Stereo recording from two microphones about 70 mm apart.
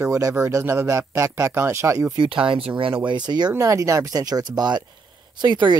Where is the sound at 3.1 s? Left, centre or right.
Right.